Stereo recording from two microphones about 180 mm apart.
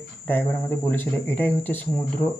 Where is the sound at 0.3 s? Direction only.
10° left (ahead or behind).